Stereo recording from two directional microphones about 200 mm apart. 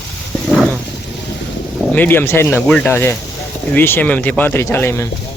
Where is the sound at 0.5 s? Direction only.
5° right (ahead or behind).